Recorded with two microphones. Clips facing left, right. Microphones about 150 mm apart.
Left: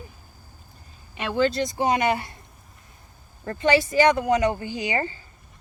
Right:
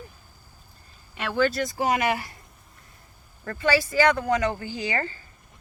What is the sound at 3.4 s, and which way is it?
A woman's voice, 20° left (ahead or behind).